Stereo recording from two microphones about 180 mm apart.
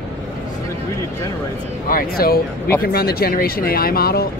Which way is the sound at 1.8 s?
55° left (ahead or behind).